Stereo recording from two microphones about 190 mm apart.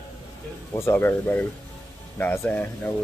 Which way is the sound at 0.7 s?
15° left (ahead or behind).